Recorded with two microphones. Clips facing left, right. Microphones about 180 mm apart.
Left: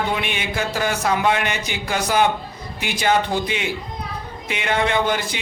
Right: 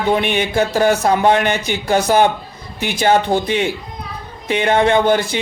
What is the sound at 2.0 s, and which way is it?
Speech, 30° right (ahead or behind).